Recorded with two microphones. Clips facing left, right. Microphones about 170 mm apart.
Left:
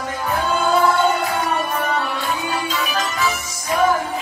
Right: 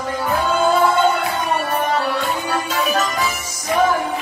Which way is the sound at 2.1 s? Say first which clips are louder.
Right 3 dB; 90° right.